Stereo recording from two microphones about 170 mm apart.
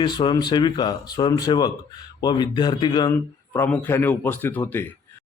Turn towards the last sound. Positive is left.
turn(degrees=10)  # may be behind; listen again after turning